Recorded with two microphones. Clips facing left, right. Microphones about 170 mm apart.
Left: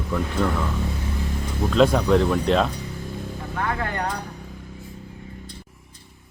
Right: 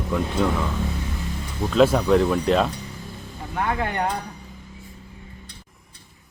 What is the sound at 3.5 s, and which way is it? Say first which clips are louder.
Speech: right 3 dB; 20° right (ahead or behind).